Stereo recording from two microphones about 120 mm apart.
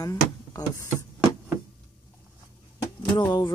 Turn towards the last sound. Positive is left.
turn(degrees=35)  # may be behind; listen again after turning